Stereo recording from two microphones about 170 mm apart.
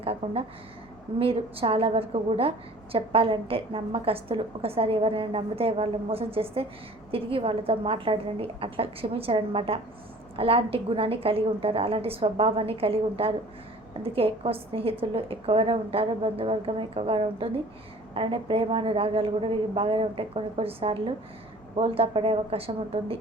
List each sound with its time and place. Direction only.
0.0 s a woman's voice: 35° right (ahead or behind)